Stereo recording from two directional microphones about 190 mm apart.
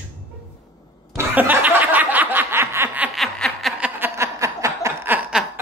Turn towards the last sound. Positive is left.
turn(degrees=-5)  # may be behind; listen again after turning